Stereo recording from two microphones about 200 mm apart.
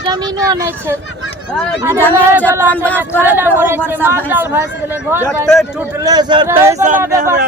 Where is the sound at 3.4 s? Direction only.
10° right (ahead or behind).